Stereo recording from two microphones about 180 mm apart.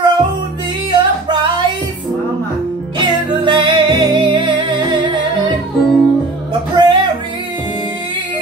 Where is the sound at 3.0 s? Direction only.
25° right (ahead or behind).